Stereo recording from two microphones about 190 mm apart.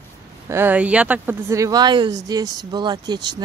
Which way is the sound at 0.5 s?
10° right (ahead or behind).